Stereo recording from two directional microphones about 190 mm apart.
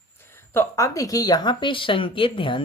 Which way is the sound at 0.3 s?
10° left (ahead or behind).